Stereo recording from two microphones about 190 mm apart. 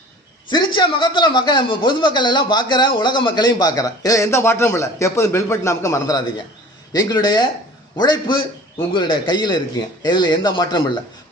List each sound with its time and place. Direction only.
0.5 s speech: 25° left (ahead or behind)